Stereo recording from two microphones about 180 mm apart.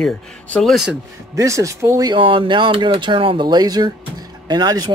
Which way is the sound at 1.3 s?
15° right (ahead or behind).